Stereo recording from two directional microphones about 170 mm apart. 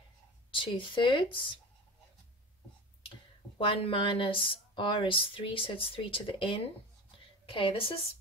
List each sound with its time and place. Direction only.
0.5 s speech: 30° left (ahead or behind)
3.5 s speech: 30° left (ahead or behind)